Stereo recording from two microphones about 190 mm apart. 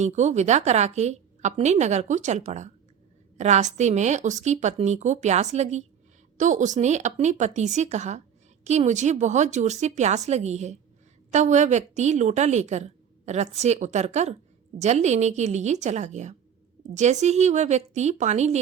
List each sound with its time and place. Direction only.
0.0 s a woman's voice: 40° right (ahead or behind)